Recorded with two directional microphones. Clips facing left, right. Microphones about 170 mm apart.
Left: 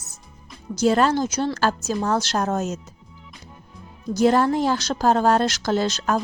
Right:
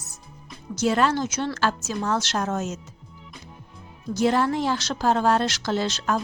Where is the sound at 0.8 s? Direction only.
35° left (ahead or behind).